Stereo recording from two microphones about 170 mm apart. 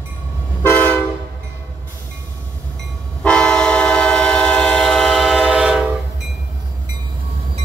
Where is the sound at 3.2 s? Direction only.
5° left (ahead or behind).